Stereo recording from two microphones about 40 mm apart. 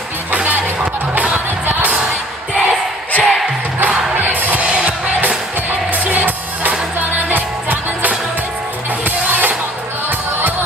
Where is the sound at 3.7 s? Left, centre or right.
Right.